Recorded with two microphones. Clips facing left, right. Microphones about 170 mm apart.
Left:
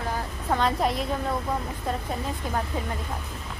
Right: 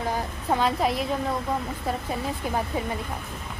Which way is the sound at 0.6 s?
Centre (ahead or behind).